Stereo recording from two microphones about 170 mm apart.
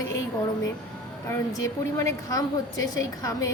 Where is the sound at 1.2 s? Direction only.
20° left (ahead or behind).